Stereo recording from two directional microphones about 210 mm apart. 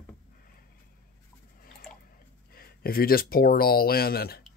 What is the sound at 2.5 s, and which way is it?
Speech, 45° left (ahead or behind).